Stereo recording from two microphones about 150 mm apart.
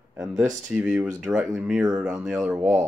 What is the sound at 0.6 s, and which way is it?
Speech, 5° right (ahead or behind).